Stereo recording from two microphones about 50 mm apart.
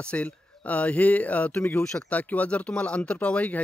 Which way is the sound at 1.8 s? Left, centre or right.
Centre.